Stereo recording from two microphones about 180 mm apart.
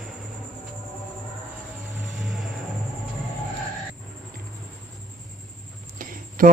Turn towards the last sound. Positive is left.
turn(degrees=-50)  # may be behind; listen again after turning